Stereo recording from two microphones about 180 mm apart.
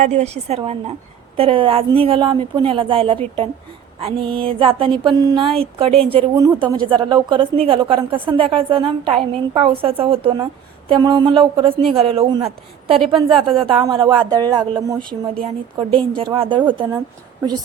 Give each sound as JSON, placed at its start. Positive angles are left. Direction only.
{"t": 0.0, "sound": "a woman's voice", "side_deg": -40}
{"t": 6.1, "sound": "a woman's voice", "side_deg": -20}
{"t": 16.0, "sound": "a woman's voice", "side_deg": -30}